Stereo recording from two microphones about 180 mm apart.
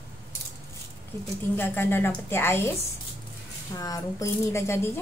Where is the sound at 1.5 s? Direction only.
10° left (ahead or behind).